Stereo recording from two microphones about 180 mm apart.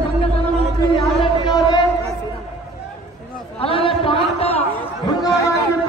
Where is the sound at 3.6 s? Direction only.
30° left (ahead or behind).